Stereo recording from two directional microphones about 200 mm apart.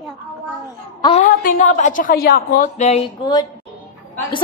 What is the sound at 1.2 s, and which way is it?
A woman's voice, 45° left (ahead or behind).